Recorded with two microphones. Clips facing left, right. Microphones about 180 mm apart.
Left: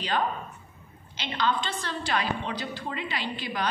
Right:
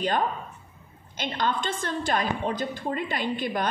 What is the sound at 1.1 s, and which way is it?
A woman's voice, 50° right (ahead or behind).